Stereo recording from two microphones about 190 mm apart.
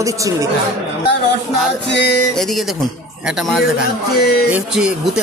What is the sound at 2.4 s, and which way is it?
Speech, centre (ahead or behind).